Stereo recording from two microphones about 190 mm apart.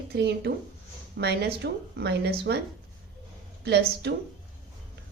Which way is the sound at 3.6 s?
60° right (ahead or behind).